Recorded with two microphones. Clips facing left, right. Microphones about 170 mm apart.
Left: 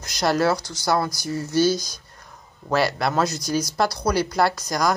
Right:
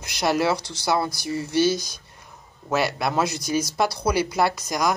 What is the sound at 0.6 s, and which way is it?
Speech, 30° right (ahead or behind).